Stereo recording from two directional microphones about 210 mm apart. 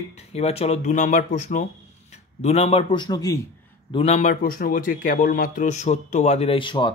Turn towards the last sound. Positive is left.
turn(degrees=25)  # may be behind; listen again after turning